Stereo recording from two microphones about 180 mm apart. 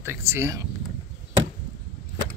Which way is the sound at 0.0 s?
15° right (ahead or behind).